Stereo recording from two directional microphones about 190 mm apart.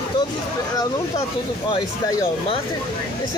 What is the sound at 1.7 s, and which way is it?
Speech, 20° left (ahead or behind).